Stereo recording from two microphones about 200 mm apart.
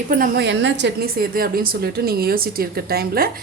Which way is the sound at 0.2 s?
60° right (ahead or behind).